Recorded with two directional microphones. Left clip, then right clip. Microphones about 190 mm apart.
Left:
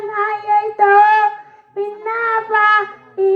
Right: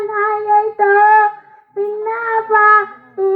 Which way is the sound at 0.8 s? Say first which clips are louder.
Left 1 dB; 45° left (ahead or behind).